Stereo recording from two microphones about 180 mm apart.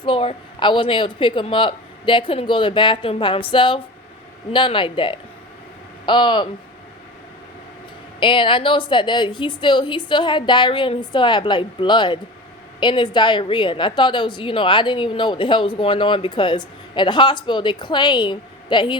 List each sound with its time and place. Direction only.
0.0 s a woman's voice: 30° left (ahead or behind)
8.2 s a woman's voice: 25° left (ahead or behind)